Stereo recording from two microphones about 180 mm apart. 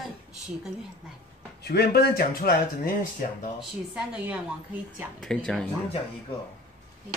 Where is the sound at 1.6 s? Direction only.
60° left (ahead or behind).